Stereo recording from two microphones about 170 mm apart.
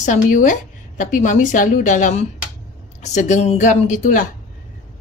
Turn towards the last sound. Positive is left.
turn(degrees=50)  # may be behind; listen again after turning